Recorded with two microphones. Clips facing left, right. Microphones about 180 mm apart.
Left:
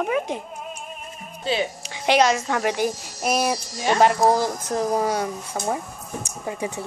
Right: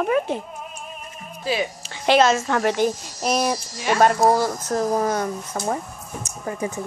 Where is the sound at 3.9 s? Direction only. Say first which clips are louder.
Right 1 dB; 15° left (ahead or behind).